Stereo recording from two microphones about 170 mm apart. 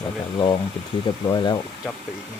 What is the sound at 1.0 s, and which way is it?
Speech, 25° left (ahead or behind).